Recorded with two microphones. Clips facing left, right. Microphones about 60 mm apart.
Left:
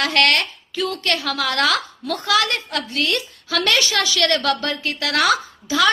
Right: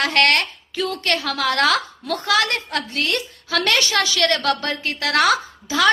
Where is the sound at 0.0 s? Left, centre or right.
Right.